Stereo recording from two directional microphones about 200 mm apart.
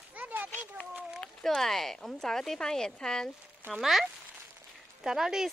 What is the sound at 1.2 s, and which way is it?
Speech, centre (ahead or behind).